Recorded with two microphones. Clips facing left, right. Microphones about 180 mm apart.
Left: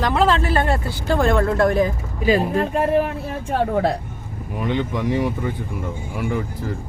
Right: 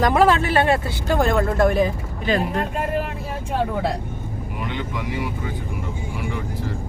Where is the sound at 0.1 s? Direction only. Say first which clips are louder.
Right 1 dB; 10° right (ahead or behind).